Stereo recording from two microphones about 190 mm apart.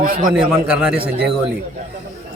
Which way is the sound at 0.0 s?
45° right (ahead or behind).